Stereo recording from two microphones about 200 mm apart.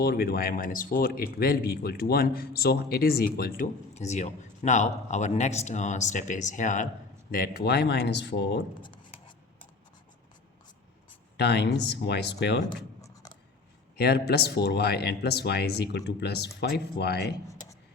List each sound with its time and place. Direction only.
0.0 s speech: 50° left (ahead or behind)
3.9 s speech: 35° left (ahead or behind); by 8.6 s 60° left (ahead or behind)
8.8 s a sound: 25° left (ahead or behind)
11.3 s speech: 55° left (ahead or behind)
13.9 s speech: 50° left (ahead or behind)